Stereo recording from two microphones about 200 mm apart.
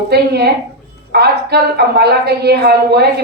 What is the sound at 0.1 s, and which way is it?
A woman's voice, 55° right (ahead or behind).